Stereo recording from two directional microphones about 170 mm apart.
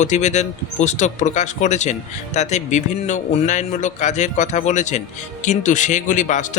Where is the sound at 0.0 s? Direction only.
45° left (ahead or behind).